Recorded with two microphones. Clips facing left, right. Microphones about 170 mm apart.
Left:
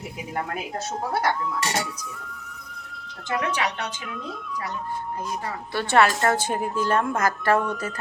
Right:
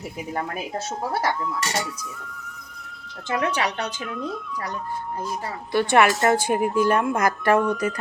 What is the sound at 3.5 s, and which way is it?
Speech, 35° right (ahead or behind).